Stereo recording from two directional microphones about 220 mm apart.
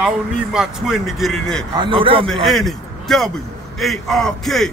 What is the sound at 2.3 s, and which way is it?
A man's voice, centre (ahead or behind).